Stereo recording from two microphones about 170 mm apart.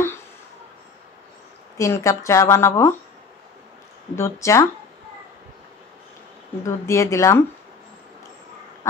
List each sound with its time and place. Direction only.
1.8 s a woman's voice: 15° left (ahead or behind)
4.1 s a woman's voice: 15° left (ahead or behind)
6.6 s a woman's voice: 15° left (ahead or behind)